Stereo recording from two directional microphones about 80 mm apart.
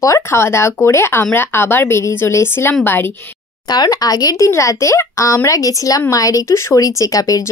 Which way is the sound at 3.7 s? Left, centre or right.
Left.